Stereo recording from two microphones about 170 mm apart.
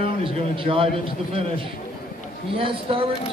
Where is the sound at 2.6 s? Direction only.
30° right (ahead or behind).